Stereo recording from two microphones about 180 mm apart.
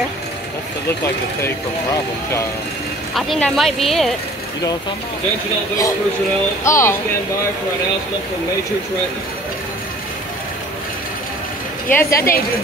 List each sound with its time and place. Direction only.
3.2 s speech: 5° left (ahead or behind)
6.6 s a woman's voice: 15° left (ahead or behind)
11.9 s a woman's voice: 15° left (ahead or behind)